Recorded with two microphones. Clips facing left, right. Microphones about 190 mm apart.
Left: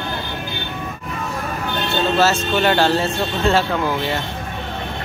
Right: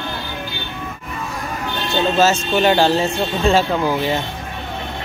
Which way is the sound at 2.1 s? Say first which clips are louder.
Right 1 dB; 15° right (ahead or behind).